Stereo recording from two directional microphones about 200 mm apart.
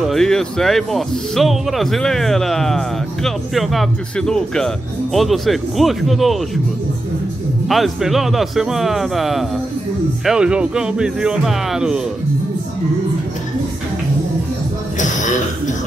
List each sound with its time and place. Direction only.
0.0 s speech: centre (ahead or behind)
7.6 s speech: centre (ahead or behind)
15.0 s throat clearing: 40° left (ahead or behind)